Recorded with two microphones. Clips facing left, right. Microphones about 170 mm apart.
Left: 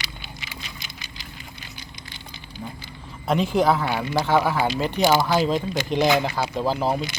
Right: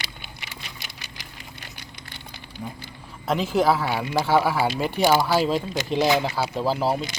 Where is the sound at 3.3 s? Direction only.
Centre (ahead or behind).